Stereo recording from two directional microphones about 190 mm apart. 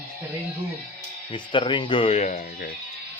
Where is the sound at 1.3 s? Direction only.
25° left (ahead or behind).